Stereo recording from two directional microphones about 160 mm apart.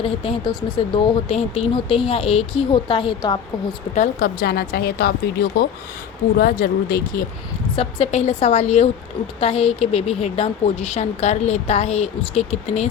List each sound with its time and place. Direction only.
0.0 s speech: 35° left (ahead or behind)
3.9 s speech: 60° left (ahead or behind)
7.8 s speech: 35° left (ahead or behind)